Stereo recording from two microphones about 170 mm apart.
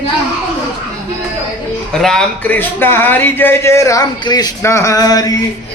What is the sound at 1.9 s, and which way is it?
Speech, 5° left (ahead or behind).